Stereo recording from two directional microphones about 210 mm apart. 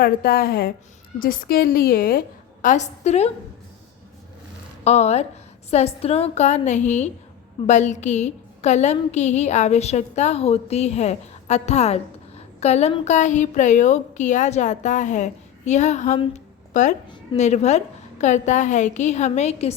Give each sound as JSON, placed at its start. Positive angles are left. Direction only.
{"t": 0.0, "sound": "a woman's voice", "side_deg": 45}
{"t": 4.8, "sound": "a woman's voice", "side_deg": 30}